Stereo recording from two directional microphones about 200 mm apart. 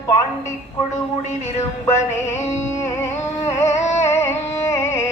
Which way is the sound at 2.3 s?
15° left (ahead or behind).